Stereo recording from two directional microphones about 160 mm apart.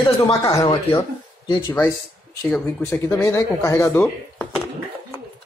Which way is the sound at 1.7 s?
15° left (ahead or behind).